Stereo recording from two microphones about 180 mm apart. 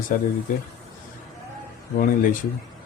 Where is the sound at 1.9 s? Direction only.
50° left (ahead or behind).